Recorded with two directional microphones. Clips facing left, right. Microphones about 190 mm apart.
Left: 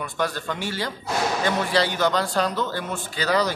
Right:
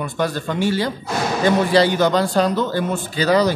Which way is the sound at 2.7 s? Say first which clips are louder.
Right 8 dB; 20° right (ahead or behind).